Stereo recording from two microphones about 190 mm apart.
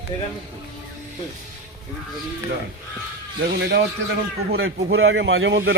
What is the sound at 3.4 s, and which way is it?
Speech, 60° right (ahead or behind).